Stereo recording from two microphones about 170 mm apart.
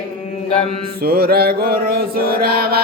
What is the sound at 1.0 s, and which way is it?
Mantra, 65° right (ahead or behind).